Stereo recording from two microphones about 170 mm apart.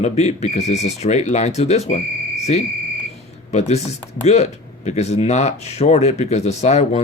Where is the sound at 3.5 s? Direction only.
40° left (ahead or behind).